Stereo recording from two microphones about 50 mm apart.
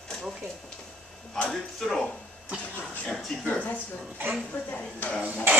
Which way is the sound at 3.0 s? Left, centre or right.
Left.